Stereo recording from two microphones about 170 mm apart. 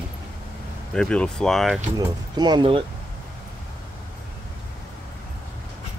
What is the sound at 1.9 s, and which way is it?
Speech, 25° right (ahead or behind).